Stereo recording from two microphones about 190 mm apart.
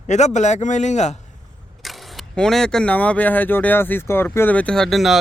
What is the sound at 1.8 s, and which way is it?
Speech, centre (ahead or behind).